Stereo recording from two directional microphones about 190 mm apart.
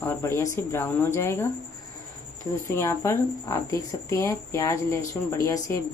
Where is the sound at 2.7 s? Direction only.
15° left (ahead or behind).